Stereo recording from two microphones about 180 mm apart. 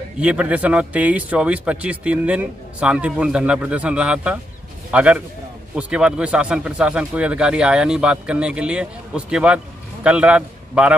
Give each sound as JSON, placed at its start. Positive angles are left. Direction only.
{"t": 0.2, "sound": "a man's voice", "side_deg": -5}